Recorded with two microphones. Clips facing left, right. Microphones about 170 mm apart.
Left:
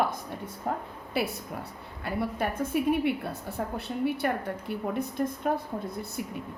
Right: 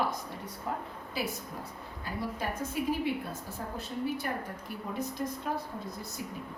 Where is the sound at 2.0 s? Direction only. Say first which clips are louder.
Left 6 dB; 65° left (ahead or behind).